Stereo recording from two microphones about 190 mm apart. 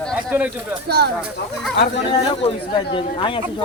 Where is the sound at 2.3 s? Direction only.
25° left (ahead or behind).